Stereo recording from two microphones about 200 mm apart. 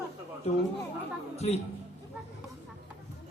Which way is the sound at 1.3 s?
30° left (ahead or behind).